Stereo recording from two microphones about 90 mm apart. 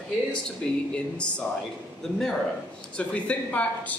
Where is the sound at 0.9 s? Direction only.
10° left (ahead or behind).